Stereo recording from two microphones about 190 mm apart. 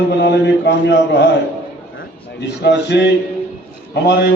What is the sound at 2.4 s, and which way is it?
A man's voice, 65° left (ahead or behind).